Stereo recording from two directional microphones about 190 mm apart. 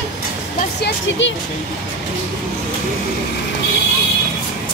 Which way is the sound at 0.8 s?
75° left (ahead or behind).